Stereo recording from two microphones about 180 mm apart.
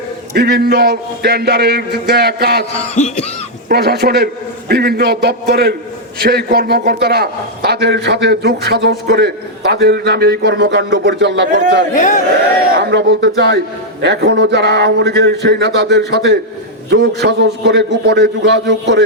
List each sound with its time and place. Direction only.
0.3 s a man's voice: 60° right (ahead or behind)
2.9 s cough: 40° left (ahead or behind)
3.7 s a man's voice: 65° right (ahead or behind)
11.9 s a man's voice: 45° left (ahead or behind)
12.7 s a man's voice: 70° right (ahead or behind)